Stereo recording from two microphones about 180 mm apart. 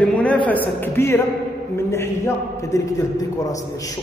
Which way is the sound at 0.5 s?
10° left (ahead or behind).